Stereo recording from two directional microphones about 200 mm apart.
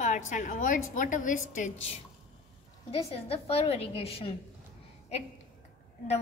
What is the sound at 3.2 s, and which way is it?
A woman's voice, 30° left (ahead or behind).